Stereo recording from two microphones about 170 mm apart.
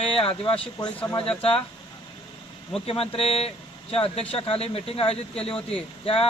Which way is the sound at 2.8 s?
35° left (ahead or behind).